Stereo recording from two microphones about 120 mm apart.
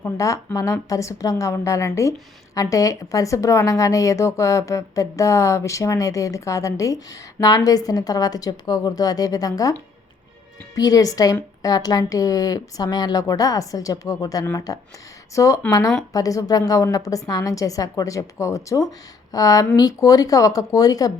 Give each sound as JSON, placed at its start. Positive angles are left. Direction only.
{"t": 0.0, "sound": "a woman's voice", "side_deg": 25}
{"t": 10.8, "sound": "a woman's voice", "side_deg": 30}